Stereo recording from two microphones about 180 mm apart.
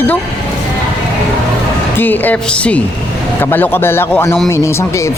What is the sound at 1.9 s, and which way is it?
Speech, 10° left (ahead or behind).